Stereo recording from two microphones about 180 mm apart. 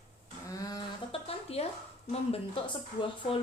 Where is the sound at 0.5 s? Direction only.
20° left (ahead or behind).